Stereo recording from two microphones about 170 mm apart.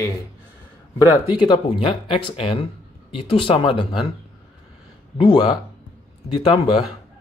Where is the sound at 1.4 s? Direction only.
30° left (ahead or behind).